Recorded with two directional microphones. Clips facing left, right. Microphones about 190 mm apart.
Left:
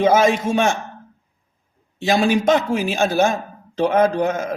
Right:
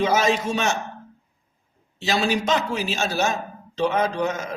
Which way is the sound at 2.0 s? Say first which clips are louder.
Left 5 dB; 50° left (ahead or behind).